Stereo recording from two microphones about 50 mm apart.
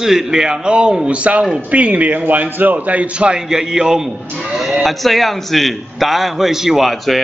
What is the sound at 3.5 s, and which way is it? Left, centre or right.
A man's voice, centre.